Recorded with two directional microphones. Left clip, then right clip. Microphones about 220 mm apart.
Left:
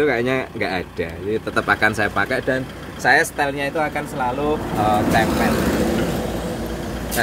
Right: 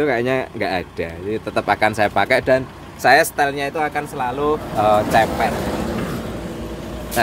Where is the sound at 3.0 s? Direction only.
45° right (ahead or behind).